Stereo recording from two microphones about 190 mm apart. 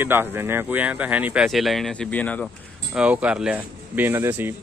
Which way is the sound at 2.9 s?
5° right (ahead or behind).